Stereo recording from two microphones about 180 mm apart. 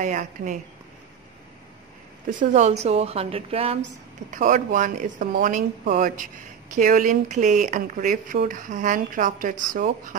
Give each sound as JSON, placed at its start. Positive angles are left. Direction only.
{"t": 0.0, "sound": "speech", "side_deg": -45}
{"t": 2.2, "sound": "a woman's voice", "side_deg": -40}
{"t": 4.3, "sound": "speech", "side_deg": -45}